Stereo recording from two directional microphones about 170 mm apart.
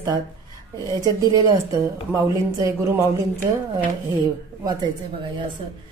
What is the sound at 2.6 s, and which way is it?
Speech, 20° right (ahead or behind).